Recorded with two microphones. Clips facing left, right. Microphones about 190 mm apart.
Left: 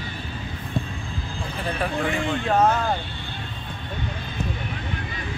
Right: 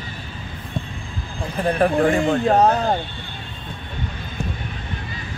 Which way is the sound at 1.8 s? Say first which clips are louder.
Right 8 dB; 45° right (ahead or behind).